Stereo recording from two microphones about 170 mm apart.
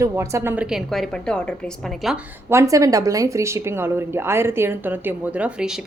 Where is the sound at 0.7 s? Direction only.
Centre (ahead or behind).